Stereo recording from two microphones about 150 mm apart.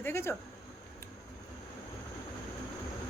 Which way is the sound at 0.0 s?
15° left (ahead or behind).